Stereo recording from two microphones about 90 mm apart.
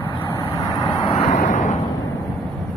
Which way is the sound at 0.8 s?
65° left (ahead or behind).